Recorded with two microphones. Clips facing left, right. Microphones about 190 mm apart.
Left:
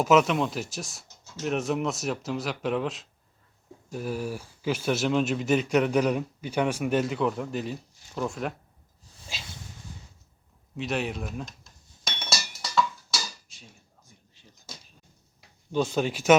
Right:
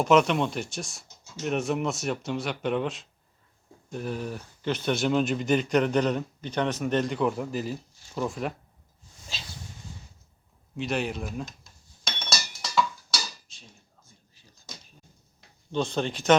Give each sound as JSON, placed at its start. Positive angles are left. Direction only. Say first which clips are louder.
{"t": 0.0, "sound": "speech", "louder": "even", "side_deg": 0}
{"t": 10.8, "sound": "speech", "louder": "right 1 dB", "side_deg": 0}
{"t": 12.0, "sound": "chink", "louder": "even", "side_deg": 5}
{"t": 14.3, "sound": "a sound", "louder": "left 3 dB", "side_deg": 20}
{"t": 15.4, "sound": "speech", "louder": "left 2 dB", "side_deg": 5}